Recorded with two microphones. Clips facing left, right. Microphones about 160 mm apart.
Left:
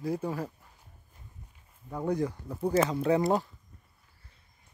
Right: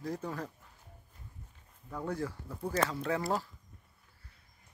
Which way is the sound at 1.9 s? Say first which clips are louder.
Left 6 dB; 20° left (ahead or behind).